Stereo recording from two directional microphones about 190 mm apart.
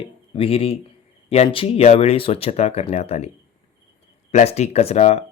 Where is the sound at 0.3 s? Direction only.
30° left (ahead or behind).